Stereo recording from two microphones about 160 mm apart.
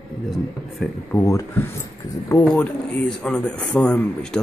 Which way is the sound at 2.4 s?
5° left (ahead or behind).